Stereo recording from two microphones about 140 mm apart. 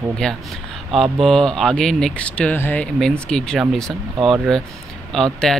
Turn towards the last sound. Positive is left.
turn(degrees=5)  # may be behind; listen again after turning